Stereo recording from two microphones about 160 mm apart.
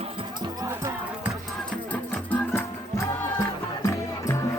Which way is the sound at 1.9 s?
10° left (ahead or behind).